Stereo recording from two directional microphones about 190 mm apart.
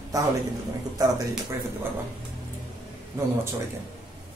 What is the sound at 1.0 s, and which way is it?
Speech, 20° right (ahead or behind).